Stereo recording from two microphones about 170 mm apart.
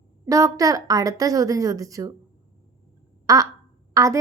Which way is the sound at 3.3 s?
20° right (ahead or behind).